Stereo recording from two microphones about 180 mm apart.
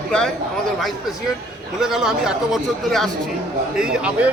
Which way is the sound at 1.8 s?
Centre (ahead or behind).